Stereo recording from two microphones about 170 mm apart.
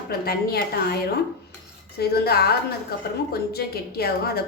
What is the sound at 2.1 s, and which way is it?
A woman's voice, 65° left (ahead or behind).